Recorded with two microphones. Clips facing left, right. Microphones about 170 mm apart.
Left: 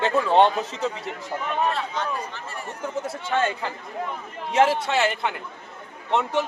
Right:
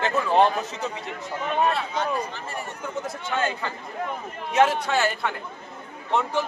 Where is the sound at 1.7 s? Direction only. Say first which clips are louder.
Right 2 dB; 10° right (ahead or behind).